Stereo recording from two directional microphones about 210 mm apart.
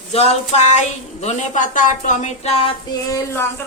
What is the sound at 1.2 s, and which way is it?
Speech, 35° left (ahead or behind).